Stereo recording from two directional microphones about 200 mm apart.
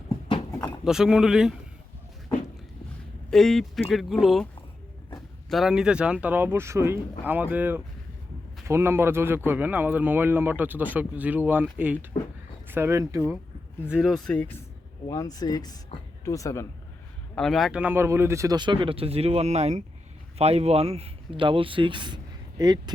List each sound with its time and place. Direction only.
0.9 s speech: 5° right (ahead or behind)
3.2 s speech: centre (ahead or behind)
5.5 s speech: centre (ahead or behind)
13.9 s speech: centre (ahead or behind); by 16.6 s 15° left (ahead or behind)
17.3 s speech: centre (ahead or behind); by 22.8 s 20° right (ahead or behind)